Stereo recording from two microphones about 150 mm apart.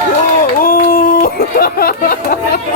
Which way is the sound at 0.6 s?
70° left (ahead or behind).